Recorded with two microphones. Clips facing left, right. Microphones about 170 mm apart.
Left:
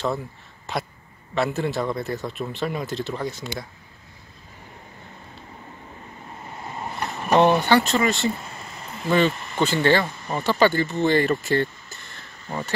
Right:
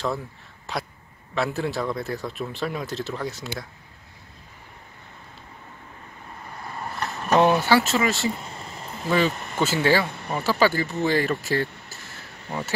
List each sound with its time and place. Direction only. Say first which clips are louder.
0.7 s speech: left 2 dB; centre (ahead or behind)
6.6 s vehicle: left 1 dB; 20° left (ahead or behind)
7.3 s speech: left 1 dB; 5° right (ahead or behind)